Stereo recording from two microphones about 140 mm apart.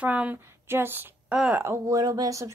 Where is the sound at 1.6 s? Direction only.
20° right (ahead or behind).